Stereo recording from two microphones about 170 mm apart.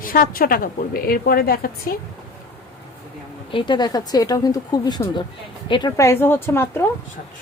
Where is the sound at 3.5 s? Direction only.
25° left (ahead or behind).